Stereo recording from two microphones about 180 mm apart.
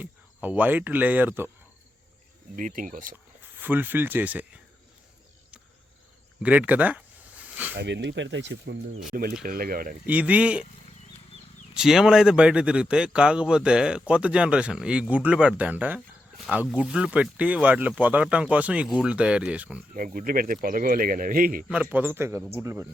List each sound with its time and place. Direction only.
0.0 s speech: 10° right (ahead or behind)
2.6 s speech: 45° right (ahead or behind)
3.6 s speech: 10° right (ahead or behind)
6.4 s a sound: 10° right (ahead or behind)
7.8 s speech: 75° right (ahead or behind)
9.4 s speech: 55° right (ahead or behind)
10.1 s speech: 10° right (ahead or behind)
11.7 s speech: 5° right (ahead or behind)
19.9 s speech: 50° right (ahead or behind)
21.7 s speech: 10° right (ahead or behind)